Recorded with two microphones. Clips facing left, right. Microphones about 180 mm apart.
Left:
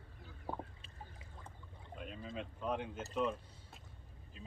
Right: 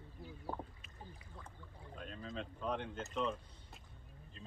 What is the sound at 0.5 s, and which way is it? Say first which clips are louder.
Chicken: left 2 dB; centre (ahead or behind).